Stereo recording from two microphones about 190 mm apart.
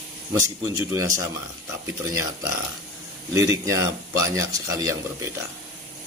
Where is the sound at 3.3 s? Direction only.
15° right (ahead or behind).